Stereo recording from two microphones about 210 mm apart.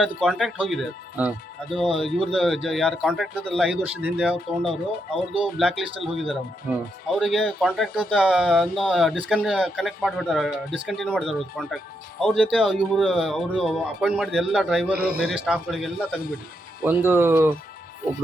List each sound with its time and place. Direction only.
0.2 s speech: centre (ahead or behind)
14.9 s a man's voice: 50° right (ahead or behind)
15.4 s speech: centre (ahead or behind)